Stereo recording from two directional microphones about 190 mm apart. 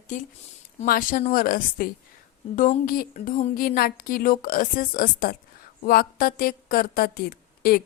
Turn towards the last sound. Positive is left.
turn(degrees=55)  # may be behind; listen again after turning